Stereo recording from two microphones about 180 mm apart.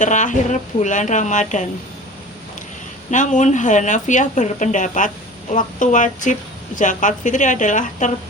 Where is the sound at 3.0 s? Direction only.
45° left (ahead or behind).